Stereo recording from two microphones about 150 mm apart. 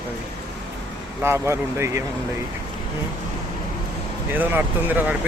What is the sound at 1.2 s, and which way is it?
Speech, 15° right (ahead or behind).